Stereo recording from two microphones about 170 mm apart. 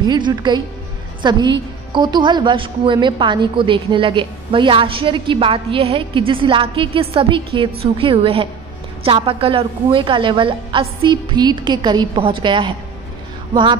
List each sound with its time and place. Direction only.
0.0 s a woman's voice: 25° right (ahead or behind)